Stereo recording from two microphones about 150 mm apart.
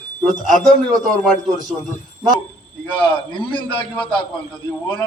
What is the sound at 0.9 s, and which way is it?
Speech, centre (ahead or behind).